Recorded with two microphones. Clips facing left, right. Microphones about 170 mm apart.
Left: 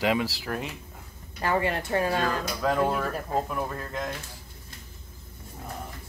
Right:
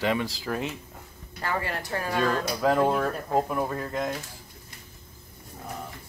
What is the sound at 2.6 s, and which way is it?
Speech, 5° right (ahead or behind).